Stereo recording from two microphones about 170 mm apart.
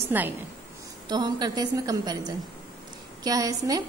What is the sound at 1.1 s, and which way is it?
A woman's voice, 25° right (ahead or behind).